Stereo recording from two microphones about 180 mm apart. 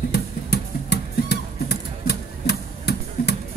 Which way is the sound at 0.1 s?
65° left (ahead or behind).